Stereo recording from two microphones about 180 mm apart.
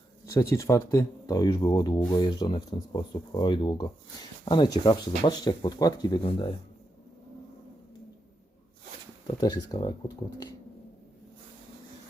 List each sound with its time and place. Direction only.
0.3 s speech: 15° left (ahead or behind)
9.2 s speech: 25° left (ahead or behind)